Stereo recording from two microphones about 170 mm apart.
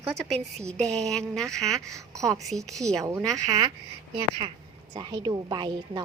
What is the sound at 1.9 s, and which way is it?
Speech, 20° right (ahead or behind).